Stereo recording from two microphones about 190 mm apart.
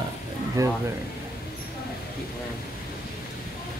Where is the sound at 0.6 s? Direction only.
15° right (ahead or behind).